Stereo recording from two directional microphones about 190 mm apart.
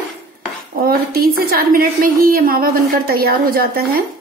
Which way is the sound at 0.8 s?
50° right (ahead or behind).